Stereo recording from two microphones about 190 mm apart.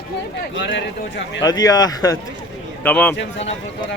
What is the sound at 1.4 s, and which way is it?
Speech, 20° left (ahead or behind).